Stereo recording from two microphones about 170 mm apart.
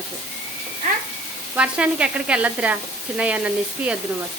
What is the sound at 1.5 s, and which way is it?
Sizzle, 5° right (ahead or behind).